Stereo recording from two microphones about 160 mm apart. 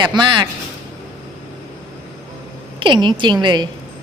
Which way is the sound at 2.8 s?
30° right (ahead or behind).